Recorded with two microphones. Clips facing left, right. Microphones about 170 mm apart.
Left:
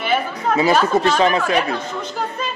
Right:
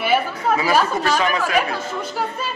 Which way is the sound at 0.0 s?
10° right (ahead or behind).